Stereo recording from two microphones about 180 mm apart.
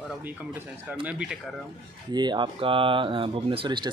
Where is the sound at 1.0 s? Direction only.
5° right (ahead or behind).